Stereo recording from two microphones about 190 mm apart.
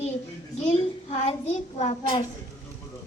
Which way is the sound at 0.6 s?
35° left (ahead or behind).